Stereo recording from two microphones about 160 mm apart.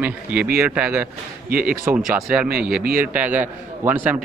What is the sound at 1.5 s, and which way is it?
Speech, 60° right (ahead or behind).